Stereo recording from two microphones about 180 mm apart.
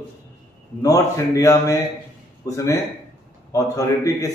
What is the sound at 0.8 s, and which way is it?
A man's voice, 20° left (ahead or behind).